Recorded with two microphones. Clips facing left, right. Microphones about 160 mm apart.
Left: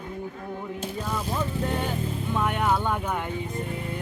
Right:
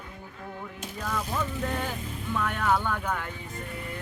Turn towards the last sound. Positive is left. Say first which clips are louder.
# left 3 dB
turn(degrees=20)  # may be behind; listen again after turning